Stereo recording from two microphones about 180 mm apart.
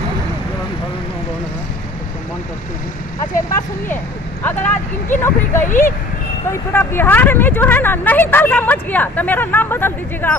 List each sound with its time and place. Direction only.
3.9 s speech: 10° left (ahead or behind)
5.7 s speech: 45° left (ahead or behind)
6.5 s speech: 10° left (ahead or behind)